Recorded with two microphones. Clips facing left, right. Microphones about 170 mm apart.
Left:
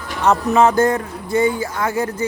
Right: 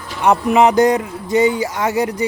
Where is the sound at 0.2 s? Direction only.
15° right (ahead or behind).